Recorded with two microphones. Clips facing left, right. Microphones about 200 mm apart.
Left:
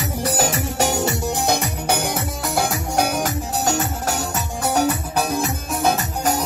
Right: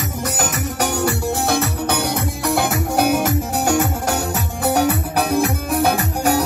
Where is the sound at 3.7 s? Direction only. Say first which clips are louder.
Right 5 dB; 55° right (ahead or behind).